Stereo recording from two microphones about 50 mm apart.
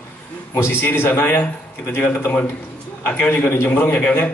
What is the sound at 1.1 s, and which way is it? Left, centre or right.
A man's voice, left.